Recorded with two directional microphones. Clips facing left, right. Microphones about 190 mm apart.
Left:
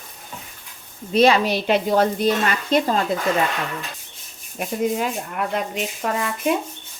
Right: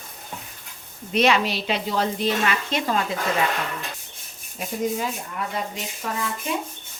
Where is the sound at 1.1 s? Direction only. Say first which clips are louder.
Left 4 dB; 35° left (ahead or behind).